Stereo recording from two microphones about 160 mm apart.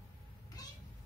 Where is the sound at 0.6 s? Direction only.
25° left (ahead or behind).